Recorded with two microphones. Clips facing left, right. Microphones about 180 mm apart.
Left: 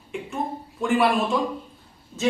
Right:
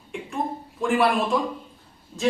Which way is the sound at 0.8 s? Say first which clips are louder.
Even; centre (ahead or behind).